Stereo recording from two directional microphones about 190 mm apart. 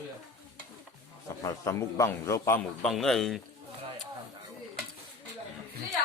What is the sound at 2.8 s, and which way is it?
Speech, centre (ahead or behind).